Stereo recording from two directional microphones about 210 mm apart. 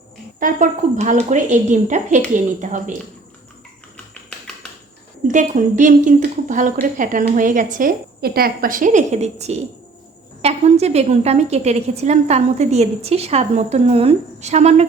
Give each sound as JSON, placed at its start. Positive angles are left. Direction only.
{"t": 0.3, "sound": "a woman's voice", "side_deg": -40}
{"t": 5.3, "sound": "a woman's voice", "side_deg": -35}